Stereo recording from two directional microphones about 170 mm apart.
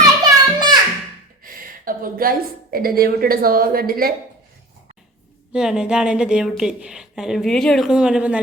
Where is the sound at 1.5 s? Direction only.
55° right (ahead or behind).